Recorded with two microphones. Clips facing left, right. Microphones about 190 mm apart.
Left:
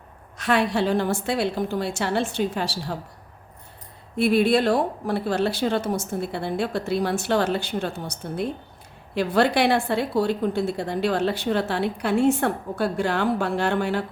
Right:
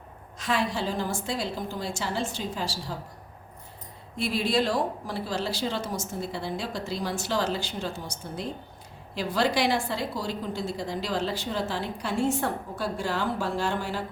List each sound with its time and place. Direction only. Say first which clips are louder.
0.3 s a woman's voice: left 6 dB; 65° left (ahead or behind)
4.2 s a woman's voice: left 7 dB; 60° left (ahead or behind)